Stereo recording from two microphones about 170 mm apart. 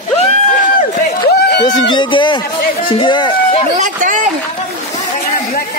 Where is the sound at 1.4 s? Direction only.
75° left (ahead or behind).